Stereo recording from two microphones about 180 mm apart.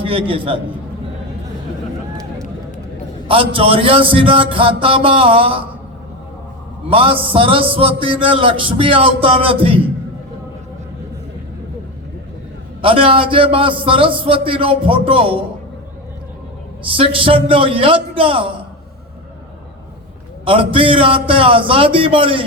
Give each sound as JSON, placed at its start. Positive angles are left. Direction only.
{"t": 0.0, "sound": "a man's voice", "side_deg": -30}
{"t": 3.2, "sound": "a man's voice", "side_deg": -30}
{"t": 6.8, "sound": "a man's voice", "side_deg": -30}
{"t": 12.8, "sound": "a man's voice", "side_deg": -30}
{"t": 17.0, "sound": "a man's voice", "side_deg": -30}
{"t": 20.4, "sound": "a man's voice", "side_deg": -30}